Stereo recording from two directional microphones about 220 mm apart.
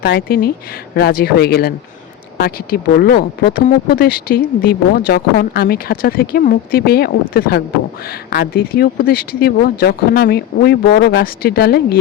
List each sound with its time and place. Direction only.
0.0 s speech: 45° left (ahead or behind)